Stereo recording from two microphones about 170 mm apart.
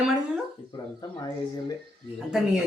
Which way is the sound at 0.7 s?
25° left (ahead or behind).